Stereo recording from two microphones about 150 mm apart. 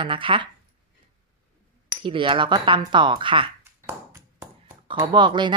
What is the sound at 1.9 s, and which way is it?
Speech, 35° right (ahead or behind).